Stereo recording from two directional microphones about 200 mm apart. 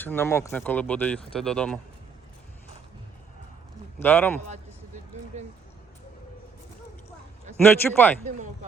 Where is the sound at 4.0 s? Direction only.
10° left (ahead or behind).